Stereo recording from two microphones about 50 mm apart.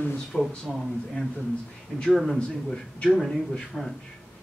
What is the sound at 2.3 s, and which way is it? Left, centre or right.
Speech, left.